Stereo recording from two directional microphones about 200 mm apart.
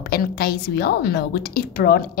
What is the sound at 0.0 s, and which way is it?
A woman's voice, 50° left (ahead or behind).